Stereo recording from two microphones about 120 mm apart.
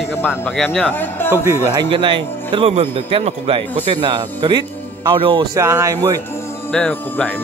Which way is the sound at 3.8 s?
45° right (ahead or behind).